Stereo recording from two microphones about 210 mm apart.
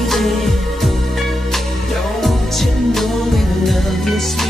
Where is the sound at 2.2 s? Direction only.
Centre (ahead or behind).